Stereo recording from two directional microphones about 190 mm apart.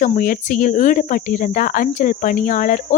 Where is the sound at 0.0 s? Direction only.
45° left (ahead or behind).